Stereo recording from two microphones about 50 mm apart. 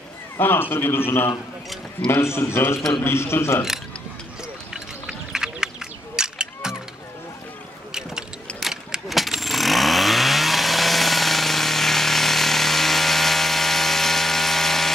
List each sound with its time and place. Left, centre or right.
0.4 s a man's voice: left
4.7 s a sound: centre
7.9 s vehicle: centre
9.1 s chainsaw: centre